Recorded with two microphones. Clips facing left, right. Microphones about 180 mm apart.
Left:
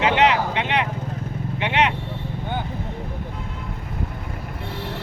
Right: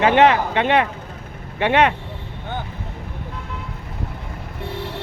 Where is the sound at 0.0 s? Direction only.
50° right (ahead or behind).